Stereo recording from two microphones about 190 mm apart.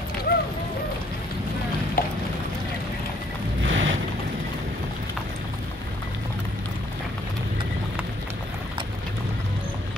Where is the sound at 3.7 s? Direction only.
80° right.